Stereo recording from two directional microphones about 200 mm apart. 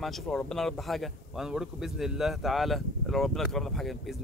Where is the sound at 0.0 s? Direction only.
Centre (ahead or behind).